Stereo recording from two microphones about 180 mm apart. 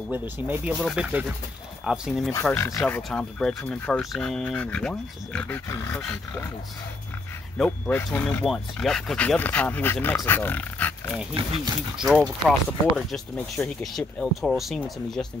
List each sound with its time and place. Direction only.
0.4 s speech: 10° right (ahead or behind)
2.4 s speech: 15° left (ahead or behind)
2.8 s speech: 5° left (ahead or behind)
7.5 s speech: 5° left (ahead or behind)
11.3 s speech: 25° right (ahead or behind)
12.0 s speech: centre (ahead or behind)